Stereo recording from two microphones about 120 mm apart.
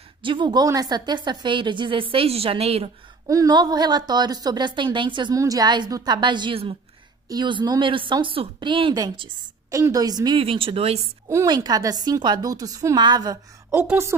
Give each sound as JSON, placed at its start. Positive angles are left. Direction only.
{"t": 0.2, "sound": "a woman's voice", "side_deg": -40}
{"t": 3.3, "sound": "a woman's voice", "side_deg": -30}
{"t": 5.3, "sound": "a woman's voice", "side_deg": -30}
{"t": 9.7, "sound": "a woman's voice", "side_deg": -25}
{"t": 10.4, "sound": "a woman's voice", "side_deg": -50}
{"t": 11.4, "sound": "a woman's voice", "side_deg": -35}
{"t": 13.7, "sound": "a woman's voice", "side_deg": -20}